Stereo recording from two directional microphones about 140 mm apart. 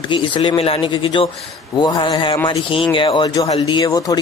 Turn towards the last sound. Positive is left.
turn(degrees=30)  # may be behind; listen again after turning